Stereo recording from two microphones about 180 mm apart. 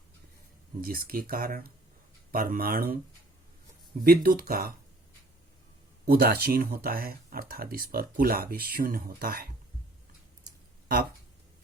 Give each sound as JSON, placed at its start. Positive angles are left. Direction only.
{"t": 0.8, "sound": "speech", "side_deg": -55}
{"t": 4.0, "sound": "speech", "side_deg": -55}
{"t": 6.1, "sound": "speech", "side_deg": -55}